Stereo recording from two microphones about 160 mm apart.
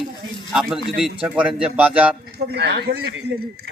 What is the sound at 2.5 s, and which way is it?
Speech, 90° right.